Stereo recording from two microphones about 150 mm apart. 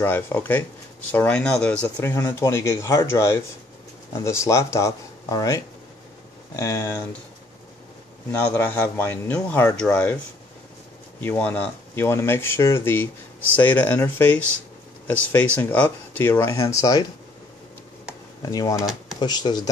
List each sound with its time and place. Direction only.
0.0 s speech: 15° left (ahead or behind)
8.3 s speech: 10° left (ahead or behind)
11.1 s speech: 10° left (ahead or behind)
18.4 s speech: 25° left (ahead or behind)